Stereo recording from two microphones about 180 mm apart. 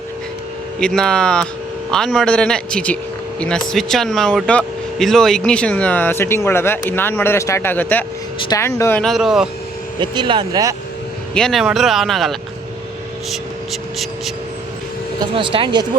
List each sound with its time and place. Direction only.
0.8 s a man's voice: 5° left (ahead or behind)
9.0 s a man's voice: centre (ahead or behind)
10.0 s speech: 25° right (ahead or behind)
11.3 s a man's voice: centre (ahead or behind)
15.4 s speech: 25° right (ahead or behind)